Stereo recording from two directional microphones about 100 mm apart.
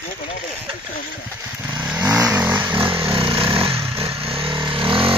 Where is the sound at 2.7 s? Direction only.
60° right (ahead or behind).